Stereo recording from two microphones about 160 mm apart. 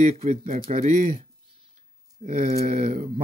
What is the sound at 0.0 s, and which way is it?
Speech, 45° right (ahead or behind).